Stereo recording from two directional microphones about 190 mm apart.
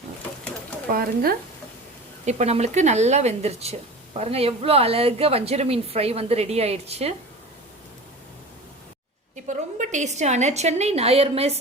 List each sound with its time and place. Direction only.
0.9 s speech: 50° right (ahead or behind)
2.2 s speech: 35° right (ahead or behind)
9.3 s a woman's voice: 40° right (ahead or behind)